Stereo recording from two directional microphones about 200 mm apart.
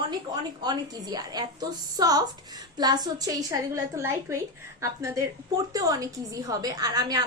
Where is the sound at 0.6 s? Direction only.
20° right (ahead or behind).